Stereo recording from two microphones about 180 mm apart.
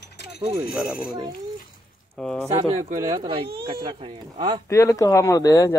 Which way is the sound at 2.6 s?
35° right (ahead or behind).